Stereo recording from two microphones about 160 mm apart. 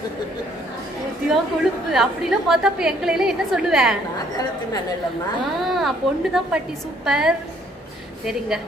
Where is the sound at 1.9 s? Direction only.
Centre (ahead or behind).